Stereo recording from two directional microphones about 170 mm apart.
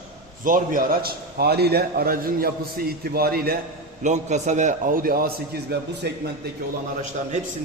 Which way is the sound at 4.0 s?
45° right (ahead or behind).